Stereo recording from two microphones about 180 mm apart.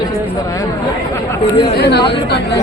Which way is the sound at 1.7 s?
65° left (ahead or behind).